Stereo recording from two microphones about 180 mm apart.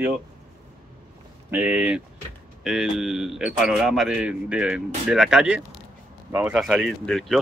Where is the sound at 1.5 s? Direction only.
10° right (ahead or behind).